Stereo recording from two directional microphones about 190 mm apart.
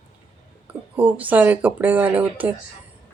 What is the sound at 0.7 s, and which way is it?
Speech, 10° right (ahead or behind).